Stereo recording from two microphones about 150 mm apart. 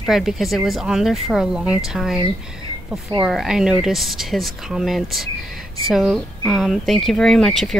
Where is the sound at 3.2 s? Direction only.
5° right (ahead or behind).